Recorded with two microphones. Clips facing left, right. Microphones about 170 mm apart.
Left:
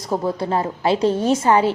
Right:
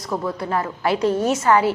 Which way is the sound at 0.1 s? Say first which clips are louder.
Left 3 dB; 30° left (ahead or behind).